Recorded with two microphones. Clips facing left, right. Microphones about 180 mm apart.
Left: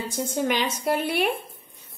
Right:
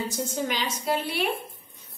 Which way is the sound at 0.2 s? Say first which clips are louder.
Left 7 dB; 55° left (ahead or behind).